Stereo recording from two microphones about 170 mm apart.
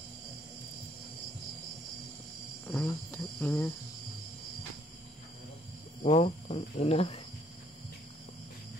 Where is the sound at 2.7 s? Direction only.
10° left (ahead or behind).